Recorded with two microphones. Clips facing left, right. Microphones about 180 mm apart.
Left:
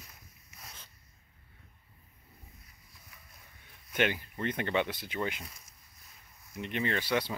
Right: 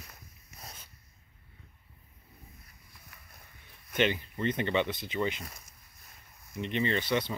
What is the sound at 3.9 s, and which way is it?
Speech, 10° left (ahead or behind).